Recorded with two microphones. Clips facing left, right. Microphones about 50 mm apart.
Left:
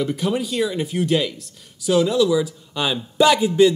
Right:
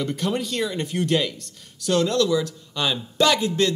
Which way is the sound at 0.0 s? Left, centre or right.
Centre.